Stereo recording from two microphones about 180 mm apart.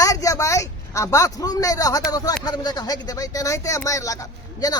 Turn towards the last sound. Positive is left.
turn(degrees=20)  # may be behind; listen again after turning